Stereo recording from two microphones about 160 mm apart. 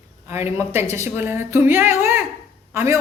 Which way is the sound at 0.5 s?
15° right (ahead or behind).